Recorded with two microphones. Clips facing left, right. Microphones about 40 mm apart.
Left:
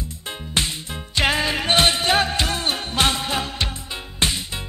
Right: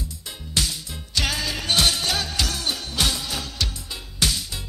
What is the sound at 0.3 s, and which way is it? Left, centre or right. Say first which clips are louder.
Music: left 3 dB; left.